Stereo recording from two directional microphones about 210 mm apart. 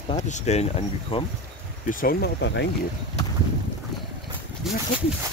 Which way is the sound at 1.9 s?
40° left (ahead or behind).